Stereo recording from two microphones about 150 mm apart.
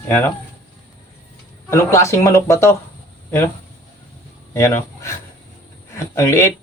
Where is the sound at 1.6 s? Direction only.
20° left (ahead or behind).